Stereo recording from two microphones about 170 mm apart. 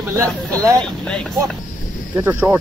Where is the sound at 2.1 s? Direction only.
15° right (ahead or behind).